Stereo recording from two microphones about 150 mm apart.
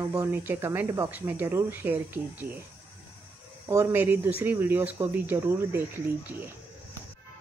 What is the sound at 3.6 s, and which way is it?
A woman's voice, 20° right (ahead or behind).